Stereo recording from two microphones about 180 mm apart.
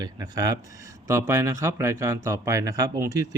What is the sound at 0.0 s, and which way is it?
Speech, 20° right (ahead or behind).